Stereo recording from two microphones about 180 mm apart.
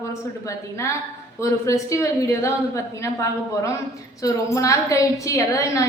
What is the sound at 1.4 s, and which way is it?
A woman's voice, 15° left (ahead or behind).